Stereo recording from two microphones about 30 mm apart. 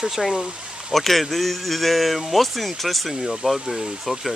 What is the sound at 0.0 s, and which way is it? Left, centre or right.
Speech, centre.